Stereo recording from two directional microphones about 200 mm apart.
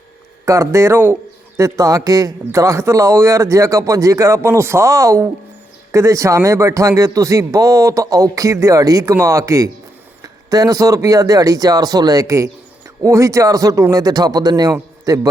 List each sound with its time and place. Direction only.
0.4 s speech: 15° right (ahead or behind)